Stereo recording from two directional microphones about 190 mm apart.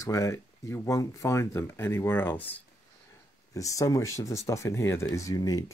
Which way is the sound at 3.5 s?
15° left (ahead or behind).